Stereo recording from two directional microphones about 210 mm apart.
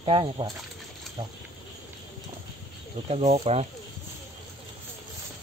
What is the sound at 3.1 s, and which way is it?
Speech, 30° right (ahead or behind).